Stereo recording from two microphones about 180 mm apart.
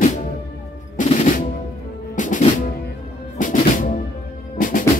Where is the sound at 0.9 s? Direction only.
45° left (ahead or behind).